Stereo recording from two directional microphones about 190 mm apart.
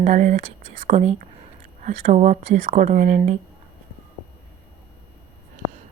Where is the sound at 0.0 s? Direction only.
40° right (ahead or behind).